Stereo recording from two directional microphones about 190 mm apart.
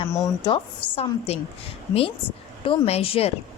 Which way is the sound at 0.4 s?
30° left (ahead or behind).